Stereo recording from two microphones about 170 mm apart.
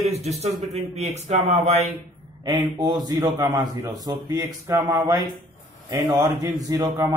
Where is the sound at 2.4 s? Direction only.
25° right (ahead or behind).